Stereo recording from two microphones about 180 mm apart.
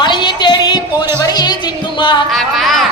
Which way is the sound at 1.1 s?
20° left (ahead or behind).